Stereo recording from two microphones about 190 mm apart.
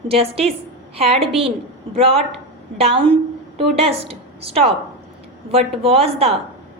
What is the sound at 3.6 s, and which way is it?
A woman's voice, 30° right (ahead or behind).